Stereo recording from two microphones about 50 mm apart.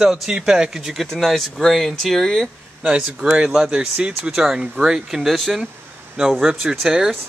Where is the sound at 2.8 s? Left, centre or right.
Right.